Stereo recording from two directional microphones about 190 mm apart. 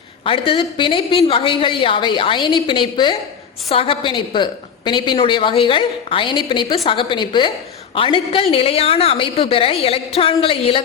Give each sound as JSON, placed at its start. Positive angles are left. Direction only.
{"t": 0.3, "sound": "a woman's voice", "side_deg": 25}